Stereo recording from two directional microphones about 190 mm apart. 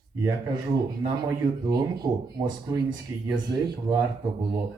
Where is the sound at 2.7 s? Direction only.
20° right (ahead or behind).